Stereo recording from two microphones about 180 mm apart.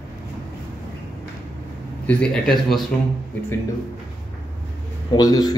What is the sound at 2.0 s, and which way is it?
Speech, 5° left (ahead or behind).